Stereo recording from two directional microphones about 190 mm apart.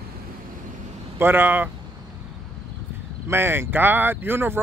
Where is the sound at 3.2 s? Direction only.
10° right (ahead or behind).